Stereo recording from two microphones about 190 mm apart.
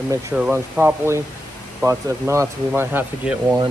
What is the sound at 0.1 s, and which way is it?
Speech, 10° right (ahead or behind).